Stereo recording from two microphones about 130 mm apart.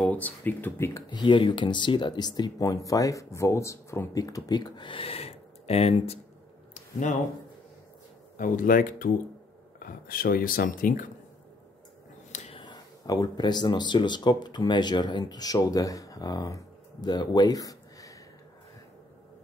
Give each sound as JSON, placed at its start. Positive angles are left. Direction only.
{"t": 0.0, "sound": "speech", "side_deg": 10}
{"t": 1.1, "sound": "speech", "side_deg": 40}
{"t": 6.7, "sound": "a sound", "side_deg": 70}
{"t": 8.4, "sound": "speech", "side_deg": 90}
{"t": 12.5, "sound": "speech", "side_deg": 35}